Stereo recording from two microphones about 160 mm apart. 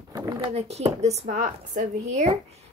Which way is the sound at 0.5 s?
40° right (ahead or behind).